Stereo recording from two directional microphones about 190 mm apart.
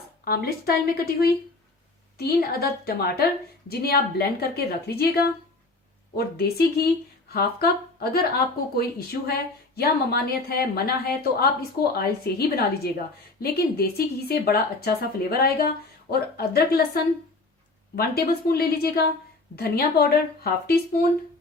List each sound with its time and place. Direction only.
0.3 s a woman's voice: 55° left (ahead or behind)